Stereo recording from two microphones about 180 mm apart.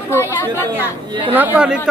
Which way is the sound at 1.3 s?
10° right (ahead or behind).